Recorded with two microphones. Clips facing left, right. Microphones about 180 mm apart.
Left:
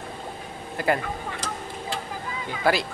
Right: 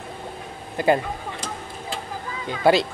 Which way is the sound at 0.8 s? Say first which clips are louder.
Right 5 dB; 20° right (ahead or behind).